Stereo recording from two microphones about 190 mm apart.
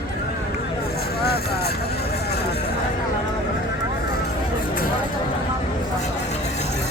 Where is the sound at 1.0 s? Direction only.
55° left (ahead or behind).